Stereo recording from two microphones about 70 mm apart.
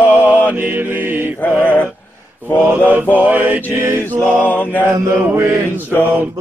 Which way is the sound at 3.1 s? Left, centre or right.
Right.